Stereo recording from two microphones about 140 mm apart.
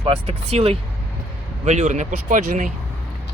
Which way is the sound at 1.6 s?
55° right (ahead or behind).